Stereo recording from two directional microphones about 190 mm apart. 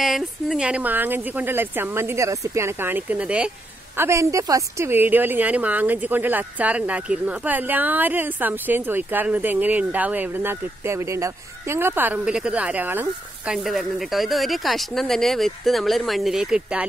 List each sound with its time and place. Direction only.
0.0 s a woman's voice: centre (ahead or behind)